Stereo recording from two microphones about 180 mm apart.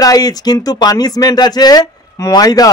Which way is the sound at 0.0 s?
20° left (ahead or behind).